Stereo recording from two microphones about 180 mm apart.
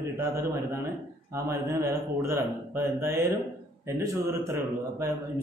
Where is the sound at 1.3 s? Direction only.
15° right (ahead or behind).